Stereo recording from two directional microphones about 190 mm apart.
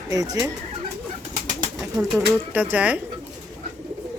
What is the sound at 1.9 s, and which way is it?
Speech, centre (ahead or behind).